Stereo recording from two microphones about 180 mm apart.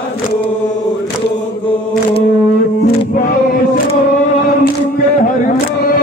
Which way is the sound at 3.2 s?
50° left (ahead or behind).